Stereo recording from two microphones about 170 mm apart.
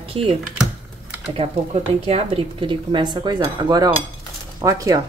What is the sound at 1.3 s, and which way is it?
Speech, 35° right (ahead or behind).